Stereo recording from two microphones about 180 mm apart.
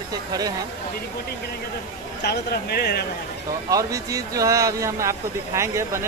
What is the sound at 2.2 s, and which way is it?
Speech, 60° left (ahead or behind).